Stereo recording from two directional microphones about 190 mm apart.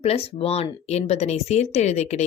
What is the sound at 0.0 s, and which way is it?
A woman's voice, 30° left (ahead or behind).